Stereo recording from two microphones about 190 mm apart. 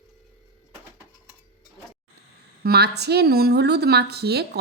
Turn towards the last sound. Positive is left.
turn(degrees=-60)  # may be behind; listen again after turning